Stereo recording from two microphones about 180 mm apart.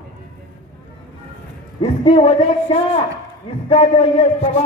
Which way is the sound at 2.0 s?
30° left (ahead or behind).